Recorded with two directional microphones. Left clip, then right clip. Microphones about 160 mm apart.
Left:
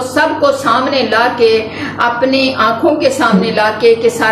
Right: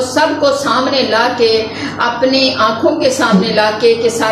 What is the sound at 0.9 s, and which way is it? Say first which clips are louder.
A woman's voice: left 1 dB; 10° left (ahead or behind).